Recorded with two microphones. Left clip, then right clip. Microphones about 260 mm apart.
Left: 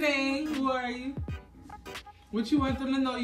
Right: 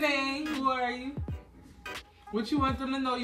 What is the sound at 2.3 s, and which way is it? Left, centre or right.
Speech, centre.